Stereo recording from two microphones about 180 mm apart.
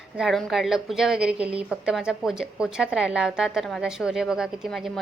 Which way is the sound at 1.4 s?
30° right (ahead or behind).